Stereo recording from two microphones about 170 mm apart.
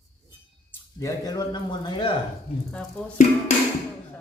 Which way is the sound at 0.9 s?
20° left (ahead or behind).